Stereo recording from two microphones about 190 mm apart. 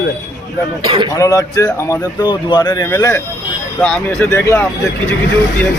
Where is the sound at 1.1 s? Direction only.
20° left (ahead or behind).